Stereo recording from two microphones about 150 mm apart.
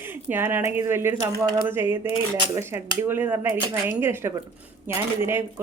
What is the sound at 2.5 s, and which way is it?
Speech, 15° right (ahead or behind).